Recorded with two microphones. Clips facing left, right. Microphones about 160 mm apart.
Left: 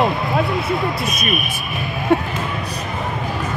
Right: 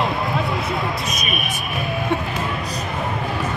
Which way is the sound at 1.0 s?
55° left (ahead or behind).